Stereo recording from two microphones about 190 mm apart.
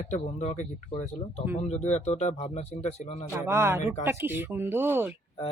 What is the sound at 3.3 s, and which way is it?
A woman's voice, 15° right (ahead or behind).